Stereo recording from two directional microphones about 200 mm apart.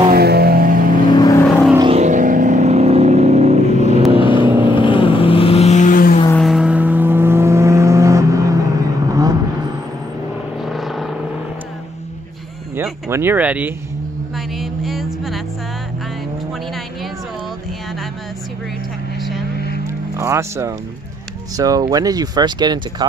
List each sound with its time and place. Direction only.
0.1 s vehicle: 50° right (ahead or behind)
1.1 s vehicle: 20° left (ahead or behind)
1.8 s vehicle: 30° right (ahead or behind)
4.1 s vehicle: 25° left (ahead or behind)
4.5 s vehicle: 10° right (ahead or behind)
4.7 s vehicle: 25° left (ahead or behind); by 6.1 s 45° left (ahead or behind)
6.3 s vehicle: centre (ahead or behind); by 9.4 s 15° right (ahead or behind)
10.6 s vehicle: centre (ahead or behind)
12.7 s a sound: 10° right (ahead or behind)
14.3 s vehicle: centre (ahead or behind)
20.2 s speech: 15° right (ahead or behind)